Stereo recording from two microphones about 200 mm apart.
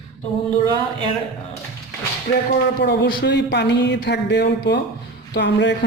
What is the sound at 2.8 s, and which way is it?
Speech, 55° left (ahead or behind).